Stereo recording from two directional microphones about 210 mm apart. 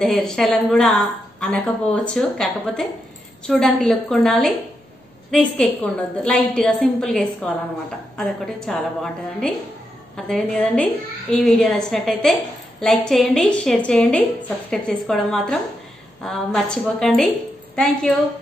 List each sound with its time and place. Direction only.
0.0 s a woman's voice: 5° left (ahead or behind)